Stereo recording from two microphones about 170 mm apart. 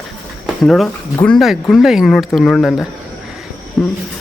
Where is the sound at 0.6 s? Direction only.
Centre (ahead or behind).